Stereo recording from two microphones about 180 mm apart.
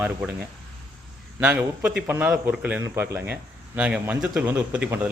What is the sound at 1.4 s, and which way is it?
A man's voice, 5° right (ahead or behind).